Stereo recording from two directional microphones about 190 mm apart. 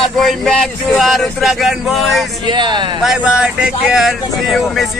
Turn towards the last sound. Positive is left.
turn(degrees=0)  # may be behind; listen again after turning